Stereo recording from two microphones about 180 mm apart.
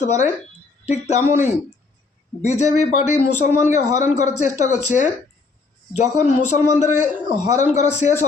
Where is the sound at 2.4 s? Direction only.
40° left (ahead or behind).